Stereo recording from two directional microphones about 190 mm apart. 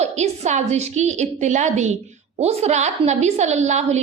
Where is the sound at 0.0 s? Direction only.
35° right (ahead or behind).